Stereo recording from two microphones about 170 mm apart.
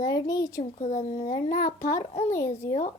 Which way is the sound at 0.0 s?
20° left (ahead or behind).